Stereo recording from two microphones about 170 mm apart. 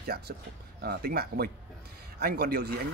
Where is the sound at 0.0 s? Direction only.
65° right (ahead or behind).